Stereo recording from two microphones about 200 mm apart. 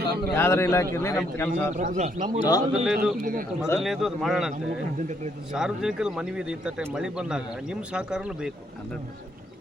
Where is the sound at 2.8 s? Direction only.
5° right (ahead or behind).